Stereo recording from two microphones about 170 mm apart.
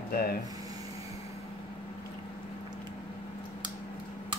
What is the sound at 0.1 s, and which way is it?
Speech, 65° left (ahead or behind).